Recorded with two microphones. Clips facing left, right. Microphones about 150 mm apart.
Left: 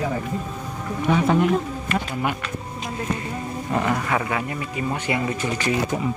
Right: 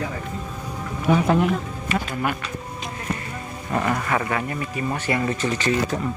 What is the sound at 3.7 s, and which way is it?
Speech, 5° left (ahead or behind).